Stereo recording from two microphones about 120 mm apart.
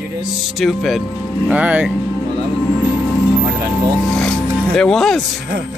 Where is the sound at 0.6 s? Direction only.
Centre (ahead or behind).